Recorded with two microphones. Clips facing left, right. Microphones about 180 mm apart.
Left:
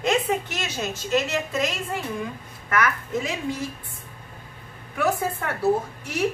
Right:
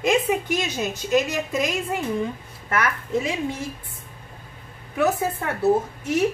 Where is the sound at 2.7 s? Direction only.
30° right (ahead or behind).